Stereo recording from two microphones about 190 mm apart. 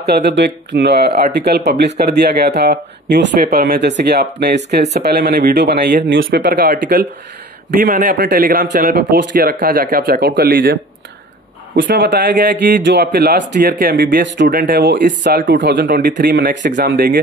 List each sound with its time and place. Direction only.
0.0 s speech: 60° right (ahead or behind)
6.0 s a man's voice: 70° right (ahead or behind); by 10.8 s 55° right (ahead or behind)
11.9 s speech: 55° right (ahead or behind)